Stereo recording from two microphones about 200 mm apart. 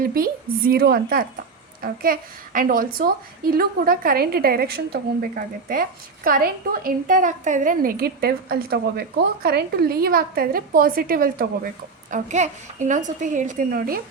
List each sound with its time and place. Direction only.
0.0 s a woman's voice: 45° right (ahead or behind)